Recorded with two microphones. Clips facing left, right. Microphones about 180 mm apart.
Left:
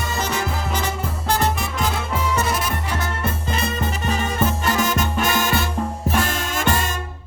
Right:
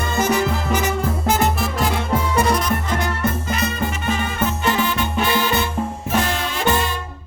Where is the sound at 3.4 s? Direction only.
30° left (ahead or behind); by 7.0 s 45° left (ahead or behind).